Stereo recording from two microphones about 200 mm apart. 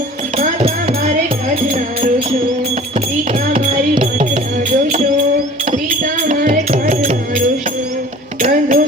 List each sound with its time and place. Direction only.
0.3 s music: 35° right (ahead or behind)
1.7 s music: 45° right (ahead or behind)
3.5 s music: 30° right (ahead or behind)
4.9 s a sound: 35° right (ahead or behind)
5.7 s music: 40° right (ahead or behind)